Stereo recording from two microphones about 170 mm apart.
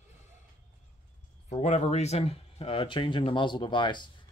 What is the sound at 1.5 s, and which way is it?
Speech, 45° left (ahead or behind).